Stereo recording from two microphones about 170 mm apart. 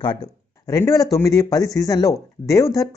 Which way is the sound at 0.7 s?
20° left (ahead or behind).